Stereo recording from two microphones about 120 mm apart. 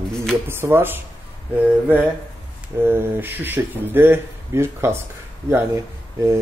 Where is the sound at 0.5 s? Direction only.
20° right (ahead or behind).